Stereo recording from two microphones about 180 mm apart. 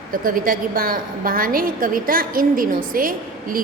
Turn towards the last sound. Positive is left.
turn(degrees=-50)  # may be behind; listen again after turning